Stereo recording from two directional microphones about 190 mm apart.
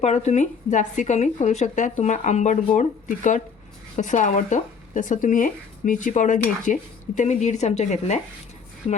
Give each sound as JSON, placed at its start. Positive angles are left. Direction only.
{"t": 0.0, "sound": "speech", "side_deg": 35}
{"t": 6.7, "sound": "dishes", "side_deg": 40}
{"t": 7.2, "sound": "speech", "side_deg": 40}